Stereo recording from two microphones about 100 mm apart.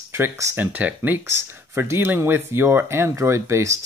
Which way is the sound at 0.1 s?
25° right (ahead or behind).